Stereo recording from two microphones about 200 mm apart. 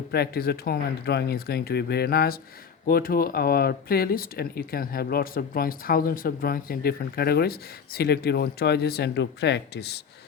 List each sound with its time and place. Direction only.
0.1 s speech: 50° left (ahead or behind)